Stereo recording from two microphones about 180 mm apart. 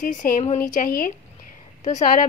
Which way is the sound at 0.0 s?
45° left (ahead or behind).